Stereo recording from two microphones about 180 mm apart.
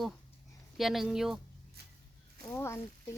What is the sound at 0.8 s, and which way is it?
Speech, centre (ahead or behind).